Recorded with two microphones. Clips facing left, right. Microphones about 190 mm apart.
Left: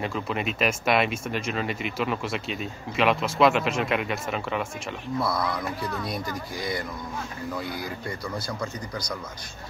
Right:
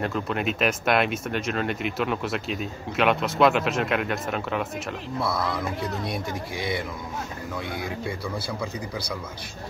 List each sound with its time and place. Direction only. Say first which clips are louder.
0.0 s speech: right 2 dB; centre (ahead or behind)
5.9 s speech: right 1 dB; 25° right (ahead or behind)
6.1 s speech: right 1 dB; centre (ahead or behind)